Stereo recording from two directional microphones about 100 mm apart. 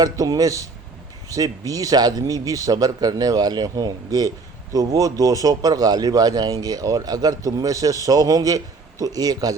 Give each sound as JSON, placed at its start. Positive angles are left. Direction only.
{"t": 0.0, "sound": "speech", "side_deg": -40}